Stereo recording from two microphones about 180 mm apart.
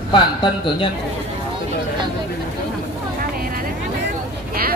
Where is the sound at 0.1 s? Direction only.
25° left (ahead or behind).